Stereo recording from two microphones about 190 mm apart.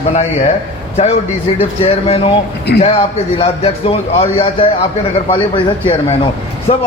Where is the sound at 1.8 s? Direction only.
30° left (ahead or behind).